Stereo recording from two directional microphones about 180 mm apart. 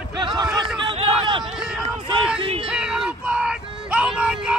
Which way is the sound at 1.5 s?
5° right (ahead or behind).